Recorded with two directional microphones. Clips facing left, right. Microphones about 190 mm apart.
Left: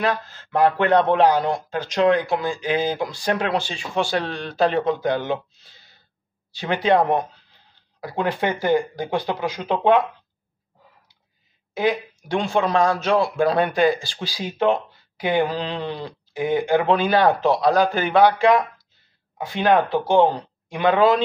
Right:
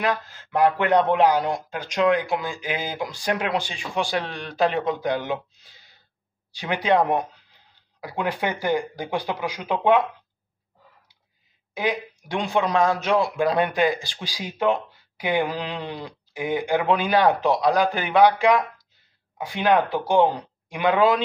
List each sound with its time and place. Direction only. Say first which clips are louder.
0.0 s speech: left 2 dB; 15° right (ahead or behind)
11.7 s speech: left 4 dB; 15° right (ahead or behind)
19.9 s speech: left 2 dB; 15° right (ahead or behind)